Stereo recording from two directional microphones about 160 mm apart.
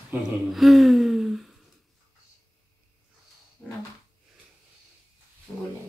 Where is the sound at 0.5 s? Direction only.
Centre (ahead or behind).